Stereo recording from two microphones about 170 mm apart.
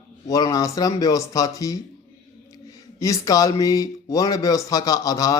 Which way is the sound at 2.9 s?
20° left (ahead or behind).